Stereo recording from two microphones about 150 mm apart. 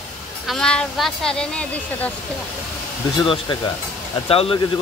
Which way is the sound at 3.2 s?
35° left (ahead or behind).